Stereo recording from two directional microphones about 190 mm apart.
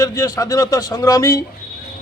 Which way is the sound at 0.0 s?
20° left (ahead or behind).